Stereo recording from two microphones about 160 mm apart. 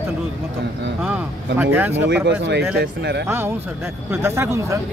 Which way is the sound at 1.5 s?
10° right (ahead or behind).